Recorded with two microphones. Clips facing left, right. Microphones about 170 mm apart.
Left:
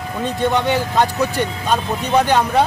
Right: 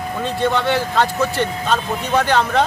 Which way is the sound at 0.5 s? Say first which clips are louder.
Left 1 dB; 15° left (ahead or behind).